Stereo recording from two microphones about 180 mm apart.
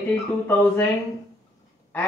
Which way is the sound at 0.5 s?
10° left (ahead or behind).